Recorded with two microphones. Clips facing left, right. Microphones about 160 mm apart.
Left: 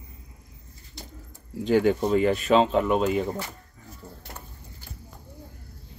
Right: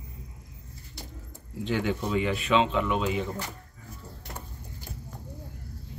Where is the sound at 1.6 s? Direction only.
40° left (ahead or behind).